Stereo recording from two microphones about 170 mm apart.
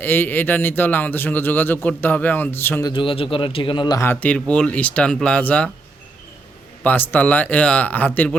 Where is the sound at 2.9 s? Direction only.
30° left (ahead or behind); by 5.7 s 5° left (ahead or behind).